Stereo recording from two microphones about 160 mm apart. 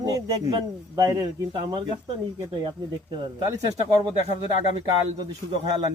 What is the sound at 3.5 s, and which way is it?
Speech, 25° right (ahead or behind).